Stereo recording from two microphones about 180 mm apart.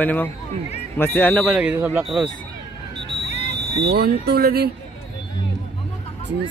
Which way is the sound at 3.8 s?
65° right (ahead or behind).